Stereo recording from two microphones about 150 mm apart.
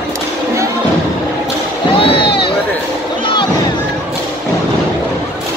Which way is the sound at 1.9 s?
35° left (ahead or behind).